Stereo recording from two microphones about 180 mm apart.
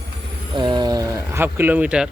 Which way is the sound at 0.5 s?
25° right (ahead or behind).